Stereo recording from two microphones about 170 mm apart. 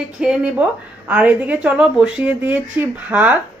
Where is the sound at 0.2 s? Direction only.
5° right (ahead or behind).